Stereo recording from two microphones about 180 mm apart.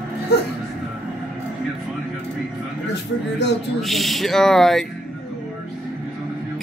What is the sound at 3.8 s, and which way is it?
Speech, centre (ahead or behind).